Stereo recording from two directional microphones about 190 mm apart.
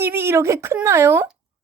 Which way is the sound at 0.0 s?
10° right (ahead or behind).